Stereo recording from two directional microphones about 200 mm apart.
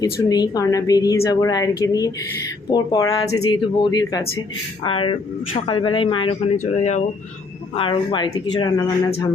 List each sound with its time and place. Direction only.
0.0 s a woman's voice: 20° left (ahead or behind)
3.2 s speech: 90° left
3.5 s speech: 20° left (ahead or behind)
7.8 s speech: 25° left (ahead or behind)